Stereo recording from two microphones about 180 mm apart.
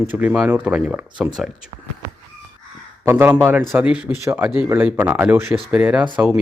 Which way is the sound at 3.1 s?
15° right (ahead or behind).